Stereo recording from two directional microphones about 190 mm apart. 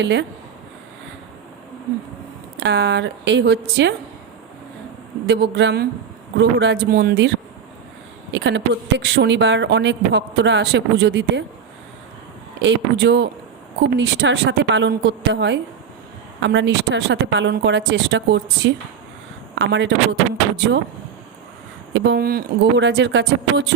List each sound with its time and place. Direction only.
0.0 s speech: 70° right (ahead or behind)
2.6 s speech: 65° right (ahead or behind)
5.2 s speech: 60° right (ahead or behind)
12.6 s speech: 70° right (ahead or behind)
21.9 s speech: 65° right (ahead or behind)